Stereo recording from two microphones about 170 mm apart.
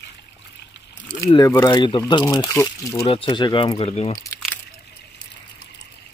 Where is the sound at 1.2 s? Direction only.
20° left (ahead or behind).